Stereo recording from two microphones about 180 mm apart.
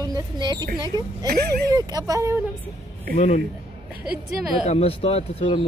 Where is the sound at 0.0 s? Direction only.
20° right (ahead or behind).